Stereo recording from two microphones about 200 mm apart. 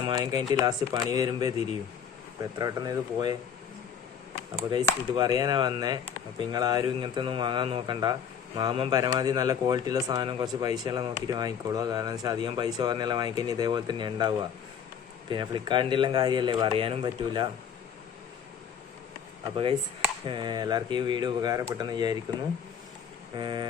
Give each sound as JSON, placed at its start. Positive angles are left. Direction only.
{"t": 0.0, "sound": "a man's voice", "side_deg": -20}
{"t": 4.5, "sound": "a man's voice", "side_deg": -20}
{"t": 20.2, "sound": "a man's voice", "side_deg": -25}
{"t": 23.4, "sound": "a man's voice", "side_deg": -20}